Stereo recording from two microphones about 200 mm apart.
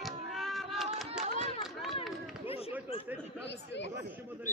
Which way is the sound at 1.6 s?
Centre (ahead or behind).